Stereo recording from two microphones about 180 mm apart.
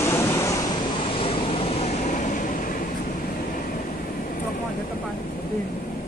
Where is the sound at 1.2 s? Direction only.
30° left (ahead or behind); by 2.8 s 50° left (ahead or behind).